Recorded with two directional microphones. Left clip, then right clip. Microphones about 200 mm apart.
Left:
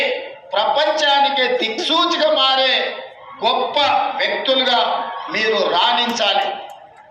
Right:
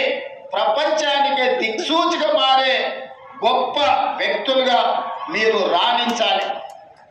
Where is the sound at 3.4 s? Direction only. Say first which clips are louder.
Left 1 dB; 5° left (ahead or behind).